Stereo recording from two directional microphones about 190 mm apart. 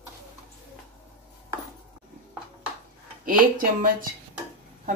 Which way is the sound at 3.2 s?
45° right (ahead or behind).